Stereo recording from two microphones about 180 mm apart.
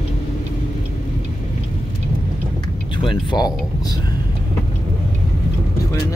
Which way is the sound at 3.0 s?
25° left (ahead or behind).